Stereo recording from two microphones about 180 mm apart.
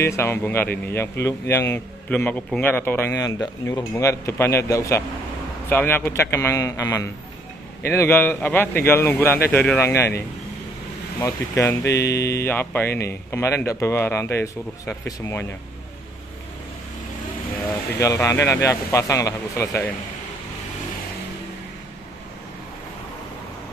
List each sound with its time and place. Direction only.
0.0 s speech: 15° left (ahead or behind)
11.1 s speech: 15° left (ahead or behind)
17.9 s speech: 15° left (ahead or behind)